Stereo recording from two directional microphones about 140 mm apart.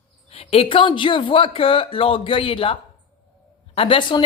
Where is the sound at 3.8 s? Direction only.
40° left (ahead or behind).